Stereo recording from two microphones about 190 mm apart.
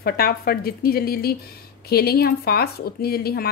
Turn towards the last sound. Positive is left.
turn(degrees=55)  # may be behind; listen again after turning